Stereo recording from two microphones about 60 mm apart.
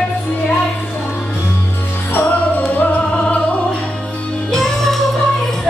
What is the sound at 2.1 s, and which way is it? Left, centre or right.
Music, left.